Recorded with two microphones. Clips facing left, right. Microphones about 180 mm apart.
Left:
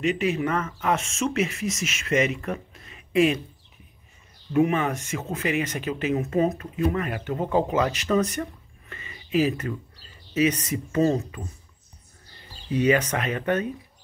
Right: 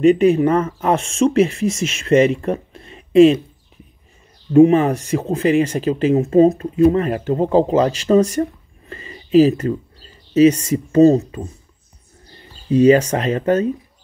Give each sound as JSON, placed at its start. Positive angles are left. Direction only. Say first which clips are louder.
{"t": 0.0, "sound": "speech", "louder": "right 12 dB", "side_deg": -35}
{"t": 4.5, "sound": "speech", "louder": "right 11 dB", "side_deg": -30}
{"t": 12.7, "sound": "speech", "louder": "right 9 dB", "side_deg": -30}